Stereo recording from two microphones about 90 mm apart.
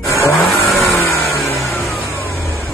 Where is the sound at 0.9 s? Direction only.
30° left (ahead or behind).